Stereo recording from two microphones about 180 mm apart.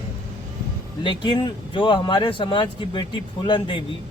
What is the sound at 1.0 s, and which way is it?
Speech, 25° left (ahead or behind).